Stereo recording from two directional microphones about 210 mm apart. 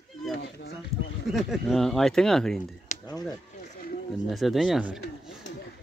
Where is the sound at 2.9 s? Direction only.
35° left (ahead or behind).